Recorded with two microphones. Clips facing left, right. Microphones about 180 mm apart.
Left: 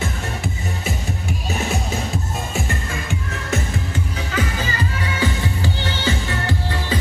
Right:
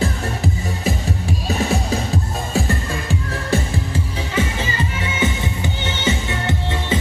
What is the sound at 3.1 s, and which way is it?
Music, 30° right (ahead or behind).